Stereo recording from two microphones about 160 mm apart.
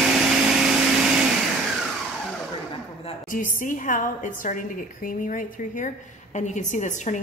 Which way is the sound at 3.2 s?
55° left (ahead or behind).